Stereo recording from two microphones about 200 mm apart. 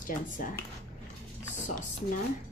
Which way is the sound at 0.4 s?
40° left (ahead or behind).